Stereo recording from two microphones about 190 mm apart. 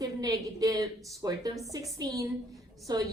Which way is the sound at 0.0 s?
20° right (ahead or behind).